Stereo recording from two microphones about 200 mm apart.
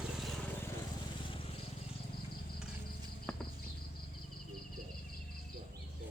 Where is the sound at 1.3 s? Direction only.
25° left (ahead or behind).